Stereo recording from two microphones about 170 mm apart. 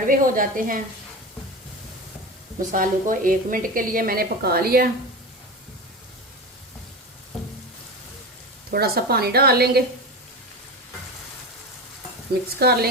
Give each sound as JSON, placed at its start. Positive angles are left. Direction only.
{"t": 0.1, "sound": "a woman's voice", "side_deg": -55}
{"t": 2.6, "sound": "a woman's voice", "side_deg": -50}
{"t": 8.7, "sound": "a woman's voice", "side_deg": -65}
{"t": 12.5, "sound": "a woman's voice", "side_deg": -65}